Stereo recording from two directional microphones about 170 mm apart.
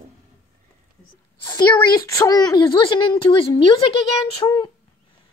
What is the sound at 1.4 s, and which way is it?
A woman's voice, 25° left (ahead or behind).